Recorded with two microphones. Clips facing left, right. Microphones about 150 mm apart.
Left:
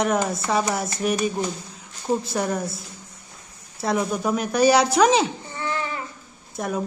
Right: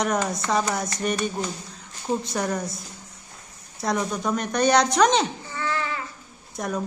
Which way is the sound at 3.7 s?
5° left (ahead or behind).